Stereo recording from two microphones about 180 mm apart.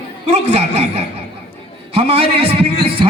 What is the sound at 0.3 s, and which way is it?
A man's voice, 35° right (ahead or behind).